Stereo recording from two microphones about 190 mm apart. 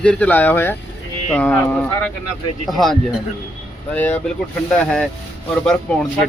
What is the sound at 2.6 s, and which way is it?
Speech, centre (ahead or behind).